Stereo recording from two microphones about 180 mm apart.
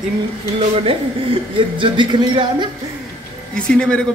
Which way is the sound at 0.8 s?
30° right (ahead or behind).